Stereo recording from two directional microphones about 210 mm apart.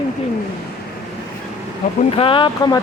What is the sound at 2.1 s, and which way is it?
Speech, 25° left (ahead or behind).